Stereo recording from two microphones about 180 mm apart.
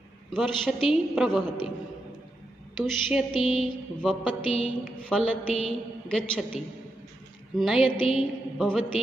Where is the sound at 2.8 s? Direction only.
5° right (ahead or behind).